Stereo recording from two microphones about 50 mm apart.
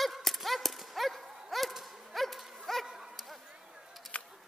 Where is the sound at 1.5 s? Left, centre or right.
Centre.